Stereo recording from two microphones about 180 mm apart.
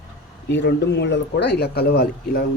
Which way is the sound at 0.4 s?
75° left (ahead or behind).